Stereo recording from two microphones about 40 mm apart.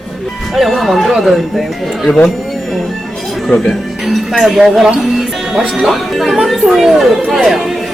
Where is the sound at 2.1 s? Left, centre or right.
Left.